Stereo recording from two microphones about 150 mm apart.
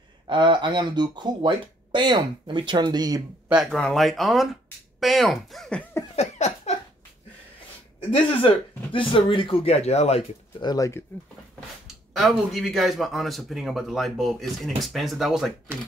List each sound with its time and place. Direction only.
0.3 s speech: 30° right (ahead or behind)
3.7 s speech: centre (ahead or behind)
6.1 s a sound: 50° left (ahead or behind)
8.1 s speech: 35° left (ahead or behind)
10.6 s speech: 25° left (ahead or behind)
11.9 s speech: centre (ahead or behind)